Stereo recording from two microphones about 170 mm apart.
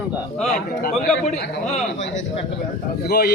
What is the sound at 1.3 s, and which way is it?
Speech, 45° left (ahead or behind).